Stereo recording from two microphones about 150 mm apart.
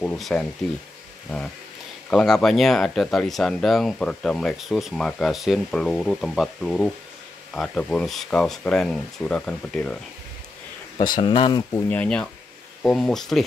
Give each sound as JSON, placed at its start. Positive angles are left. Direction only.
{"t": 0.0, "sound": "speech", "side_deg": 10}
{"t": 2.0, "sound": "speech", "side_deg": 5}
{"t": 11.0, "sound": "speech", "side_deg": 30}
{"t": 11.9, "sound": "speech", "side_deg": 10}